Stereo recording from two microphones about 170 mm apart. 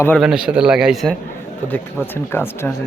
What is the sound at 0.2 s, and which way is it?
Speech, 5° right (ahead or behind).